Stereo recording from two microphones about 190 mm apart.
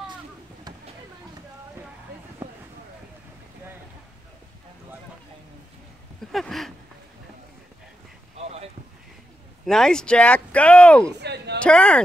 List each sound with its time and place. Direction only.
6.3 s speech: centre (ahead or behind)
8.4 s boat: 35° right (ahead or behind)
9.7 s speech: 5° left (ahead or behind)
11.1 s a sound: 60° right (ahead or behind)
11.6 s speech: 5° left (ahead or behind)